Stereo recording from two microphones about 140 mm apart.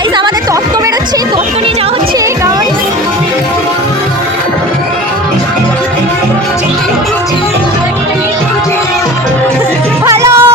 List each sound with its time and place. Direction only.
10.1 s music: 20° right (ahead or behind)